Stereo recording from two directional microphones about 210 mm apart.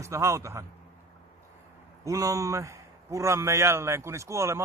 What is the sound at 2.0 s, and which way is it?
A man's voice, 15° right (ahead or behind).